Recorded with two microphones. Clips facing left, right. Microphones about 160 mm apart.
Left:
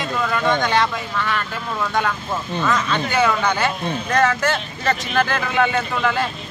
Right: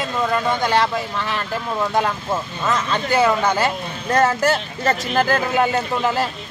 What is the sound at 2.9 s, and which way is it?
Speech, 35° right (ahead or behind).